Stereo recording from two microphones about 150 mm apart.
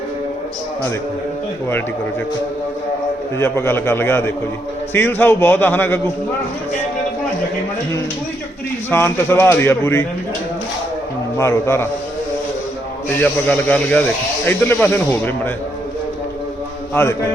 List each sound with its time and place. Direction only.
3.3 s a man's voice: 15° left (ahead or behind)
8.9 s a man's voice: 15° left (ahead or behind)
11.3 s a man's voice: 20° left (ahead or behind)
13.1 s a man's voice: 10° left (ahead or behind)
16.9 s a man's voice: 15° left (ahead or behind)